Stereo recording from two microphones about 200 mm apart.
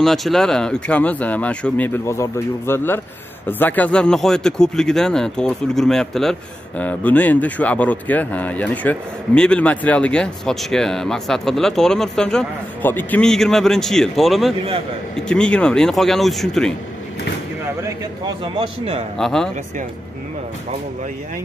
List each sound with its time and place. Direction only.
0.0 s speech: centre (ahead or behind)
17.8 s a man's voice: 20° right (ahead or behind)
19.1 s speech: centre (ahead or behind)